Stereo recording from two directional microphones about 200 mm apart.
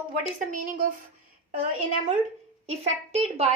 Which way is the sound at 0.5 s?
40° right (ahead or behind).